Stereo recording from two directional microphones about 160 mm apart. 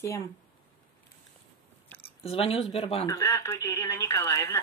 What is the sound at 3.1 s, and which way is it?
Speech, 15° left (ahead or behind).